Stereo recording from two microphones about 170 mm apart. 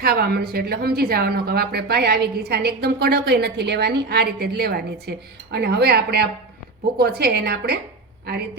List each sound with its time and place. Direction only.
0.0 s a woman's voice: 65° right (ahead or behind)